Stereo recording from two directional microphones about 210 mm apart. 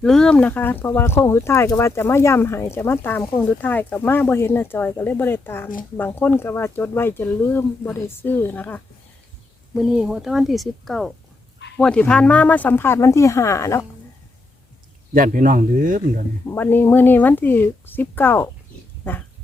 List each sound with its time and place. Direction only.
0.0 s speech: 5° left (ahead or behind)
9.7 s speech: 5° right (ahead or behind); by 13.8 s 15° left (ahead or behind)
15.1 s speech: 40° right (ahead or behind)
16.5 s speech: 10° left (ahead or behind)